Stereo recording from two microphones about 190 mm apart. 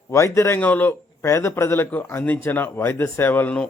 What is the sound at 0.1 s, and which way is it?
A man's voice, 15° left (ahead or behind).